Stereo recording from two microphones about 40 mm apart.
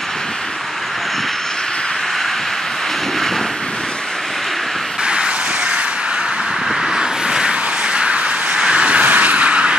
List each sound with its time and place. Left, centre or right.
5.0 s vehicle: right
7.0 s vehicle: centre
9.0 s a sound: right